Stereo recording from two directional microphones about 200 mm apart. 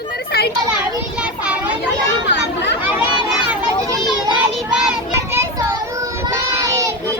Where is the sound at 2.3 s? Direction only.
60° left (ahead or behind).